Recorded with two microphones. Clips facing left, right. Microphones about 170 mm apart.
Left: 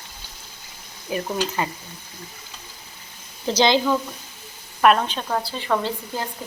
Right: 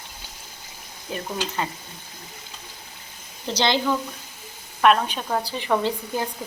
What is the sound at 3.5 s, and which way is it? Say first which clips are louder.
Speech: left 4 dB; 15° left (ahead or behind).